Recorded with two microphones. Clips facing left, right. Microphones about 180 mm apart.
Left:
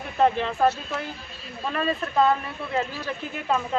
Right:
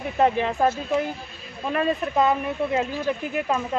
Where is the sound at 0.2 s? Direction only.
15° right (ahead or behind).